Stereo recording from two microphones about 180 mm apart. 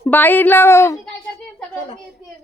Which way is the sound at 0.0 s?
10° left (ahead or behind).